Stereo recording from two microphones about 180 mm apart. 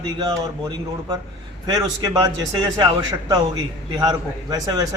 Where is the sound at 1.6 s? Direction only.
25° right (ahead or behind).